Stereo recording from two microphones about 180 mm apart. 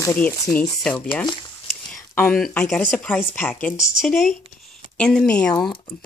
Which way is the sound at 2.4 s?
5° left (ahead or behind).